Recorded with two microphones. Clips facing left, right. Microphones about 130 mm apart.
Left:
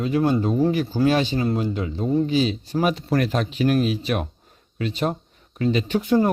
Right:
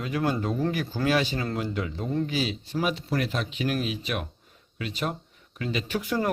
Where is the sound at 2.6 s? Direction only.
45° left (ahead or behind).